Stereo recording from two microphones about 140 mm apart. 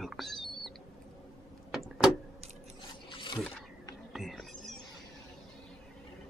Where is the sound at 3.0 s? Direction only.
35° left (ahead or behind).